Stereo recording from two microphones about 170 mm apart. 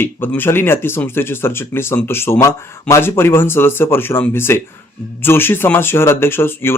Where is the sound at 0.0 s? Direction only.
10° left (ahead or behind).